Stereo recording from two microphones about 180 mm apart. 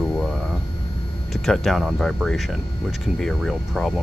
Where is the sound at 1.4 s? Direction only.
Centre (ahead or behind).